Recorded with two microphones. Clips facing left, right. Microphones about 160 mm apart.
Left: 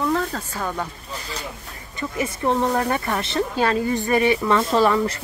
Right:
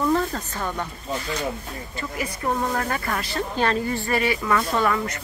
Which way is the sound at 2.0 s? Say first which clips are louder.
Left 5 dB; 20° left (ahead or behind).